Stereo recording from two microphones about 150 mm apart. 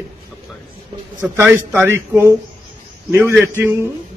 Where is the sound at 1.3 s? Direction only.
15° right (ahead or behind).